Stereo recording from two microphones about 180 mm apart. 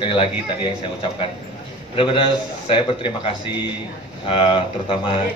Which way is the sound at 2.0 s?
30° left (ahead or behind).